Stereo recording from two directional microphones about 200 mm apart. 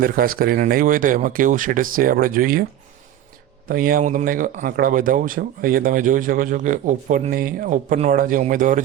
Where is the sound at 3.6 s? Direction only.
45° right (ahead or behind).